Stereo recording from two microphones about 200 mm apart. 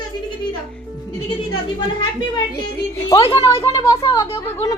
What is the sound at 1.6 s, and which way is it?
A child's voice, 25° left (ahead or behind).